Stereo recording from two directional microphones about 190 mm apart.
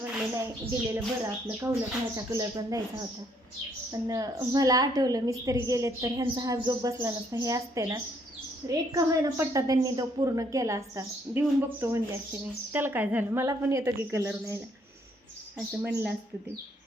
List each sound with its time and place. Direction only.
0.0 s a woman's voice: 10° right (ahead or behind)
3.9 s a woman's voice: 20° right (ahead or behind)